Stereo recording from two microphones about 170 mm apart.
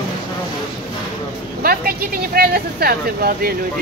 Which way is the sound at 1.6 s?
65° right (ahead or behind).